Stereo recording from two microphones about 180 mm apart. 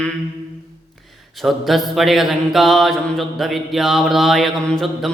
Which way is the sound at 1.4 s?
Centre (ahead or behind).